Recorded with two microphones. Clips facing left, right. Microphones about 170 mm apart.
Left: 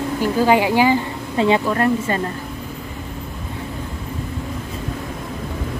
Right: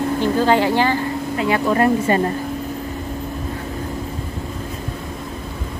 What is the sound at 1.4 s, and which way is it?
Speech, 30° left (ahead or behind).